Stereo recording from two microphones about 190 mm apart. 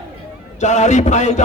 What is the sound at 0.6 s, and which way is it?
Chant, 40° left (ahead or behind).